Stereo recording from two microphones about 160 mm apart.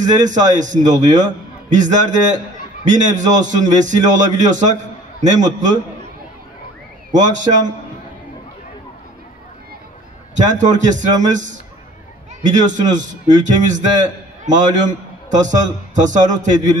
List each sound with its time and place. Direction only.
0.0 s a man's voice: 50° right (ahead or behind)
7.1 s a man's voice: 50° right (ahead or behind)
10.3 s a man's voice: 50° right (ahead or behind)